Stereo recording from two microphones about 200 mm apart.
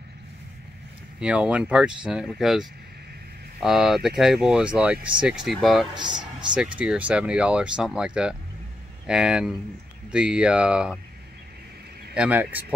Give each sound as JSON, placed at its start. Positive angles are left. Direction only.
{"t": 1.2, "sound": "speech", "side_deg": -5}
{"t": 5.9, "sound": "speech", "side_deg": -20}
{"t": 6.5, "sound": "speech", "side_deg": -5}
{"t": 12.1, "sound": "speech", "side_deg": -5}